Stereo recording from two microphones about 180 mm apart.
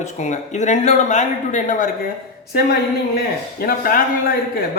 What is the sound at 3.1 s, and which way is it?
A man's voice, 55° left (ahead or behind).